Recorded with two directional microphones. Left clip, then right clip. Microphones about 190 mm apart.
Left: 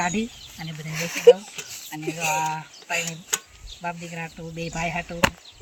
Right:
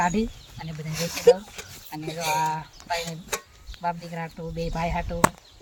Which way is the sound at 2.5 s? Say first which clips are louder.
Even; 20° right (ahead or behind).